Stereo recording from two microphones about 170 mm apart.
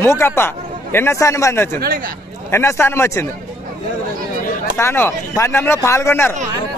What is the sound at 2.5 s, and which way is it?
Speech, 15° left (ahead or behind).